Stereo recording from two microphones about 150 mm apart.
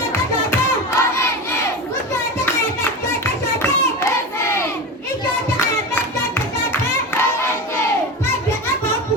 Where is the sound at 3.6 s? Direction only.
15° left (ahead or behind).